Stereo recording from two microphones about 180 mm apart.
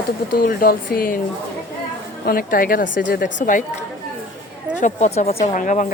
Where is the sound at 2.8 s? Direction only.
90° left.